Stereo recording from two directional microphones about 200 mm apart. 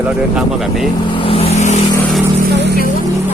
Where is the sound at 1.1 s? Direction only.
30° left (ahead or behind).